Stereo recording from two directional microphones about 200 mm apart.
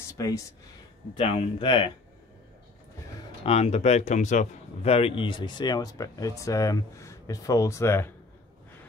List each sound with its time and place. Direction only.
0.2 s speech: 15° left (ahead or behind)
1.1 s a man's voice: 25° left (ahead or behind)
3.4 s a man's voice: 30° left (ahead or behind); by 8.1 s 10° left (ahead or behind)